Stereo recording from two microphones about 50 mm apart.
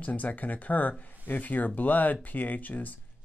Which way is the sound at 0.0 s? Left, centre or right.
Left.